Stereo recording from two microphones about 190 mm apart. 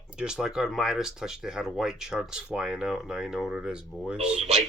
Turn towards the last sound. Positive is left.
turn(degrees=-35)  # may be behind; listen again after turning